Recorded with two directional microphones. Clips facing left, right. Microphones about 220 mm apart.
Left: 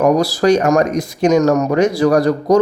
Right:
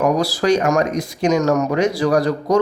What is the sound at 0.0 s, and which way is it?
Speech, 40° left (ahead or behind).